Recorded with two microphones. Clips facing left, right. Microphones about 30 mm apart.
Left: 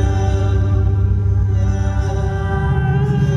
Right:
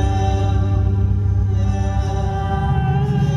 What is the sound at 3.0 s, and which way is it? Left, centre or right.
Music, centre.